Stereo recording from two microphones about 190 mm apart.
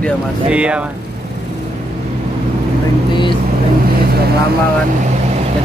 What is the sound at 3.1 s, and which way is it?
Vehicle, 25° left (ahead or behind).